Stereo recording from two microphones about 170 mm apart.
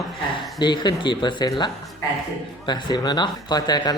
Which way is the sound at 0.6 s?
25° left (ahead or behind).